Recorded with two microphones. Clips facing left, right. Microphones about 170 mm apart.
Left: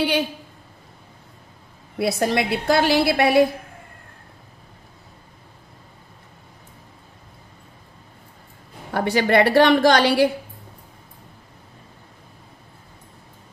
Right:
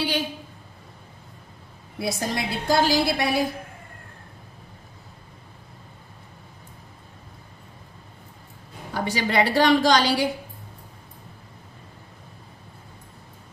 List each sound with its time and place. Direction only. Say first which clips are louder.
2.0 s a woman's voice: left 7 dB; 65° left (ahead or behind)
8.9 s a woman's voice: left 6 dB; 60° left (ahead or behind)